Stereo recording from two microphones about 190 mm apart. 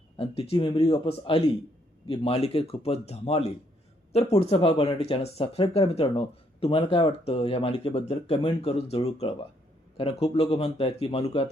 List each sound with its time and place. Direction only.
0.2 s speech: 30° left (ahead or behind)